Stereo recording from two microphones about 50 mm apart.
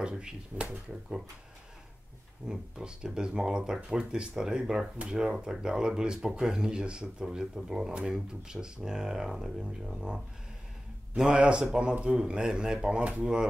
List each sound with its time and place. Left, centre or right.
0.0 s speech: centre
2.4 s speech: centre